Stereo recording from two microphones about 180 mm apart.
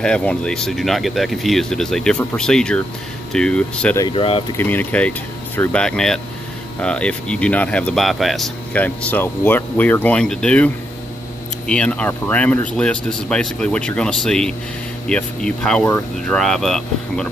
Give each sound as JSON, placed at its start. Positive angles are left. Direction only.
{"t": 0.0, "sound": "speech", "side_deg": 5}
{"t": 4.0, "sound": "speech", "side_deg": 30}
{"t": 4.6, "sound": "speech", "side_deg": 10}